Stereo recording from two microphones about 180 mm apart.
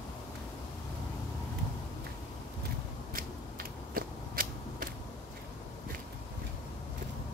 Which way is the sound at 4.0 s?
50° right (ahead or behind).